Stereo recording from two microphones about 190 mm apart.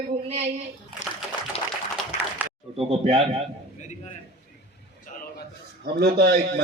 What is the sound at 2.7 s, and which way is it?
Speech, 30° right (ahead or behind).